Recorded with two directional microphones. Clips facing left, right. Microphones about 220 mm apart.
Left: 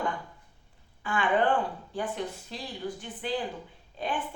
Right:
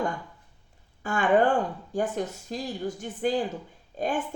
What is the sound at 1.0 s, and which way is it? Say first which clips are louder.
A woman's voice: right 4 dB; 45° right (ahead or behind).